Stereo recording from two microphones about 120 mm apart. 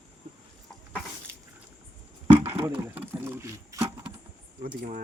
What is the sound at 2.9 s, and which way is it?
Speech, 20° right (ahead or behind).